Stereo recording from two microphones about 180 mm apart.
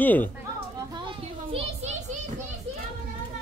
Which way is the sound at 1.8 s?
40° right (ahead or behind).